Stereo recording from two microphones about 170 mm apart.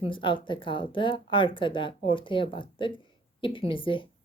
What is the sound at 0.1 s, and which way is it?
Speech, 30° left (ahead or behind).